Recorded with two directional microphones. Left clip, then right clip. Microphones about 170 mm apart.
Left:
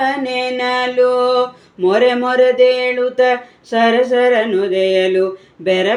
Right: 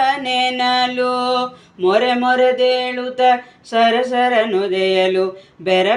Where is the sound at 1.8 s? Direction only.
25° left (ahead or behind).